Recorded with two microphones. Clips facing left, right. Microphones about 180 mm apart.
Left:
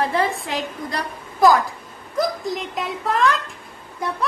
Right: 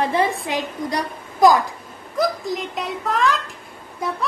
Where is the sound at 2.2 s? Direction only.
Centre (ahead or behind).